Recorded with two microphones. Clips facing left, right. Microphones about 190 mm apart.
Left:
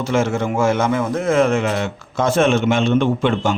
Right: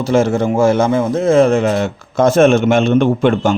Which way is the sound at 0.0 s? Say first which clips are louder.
Right 5 dB; 35° right (ahead or behind).